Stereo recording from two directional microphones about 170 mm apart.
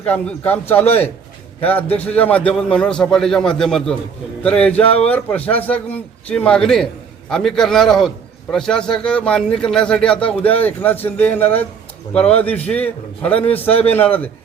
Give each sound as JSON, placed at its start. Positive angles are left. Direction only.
{"t": 0.0, "sound": "a man's voice", "side_deg": 10}
{"t": 2.0, "sound": "a man's voice", "side_deg": 10}
{"t": 4.7, "sound": "speech", "side_deg": 35}
{"t": 5.0, "sound": "a man's voice", "side_deg": 10}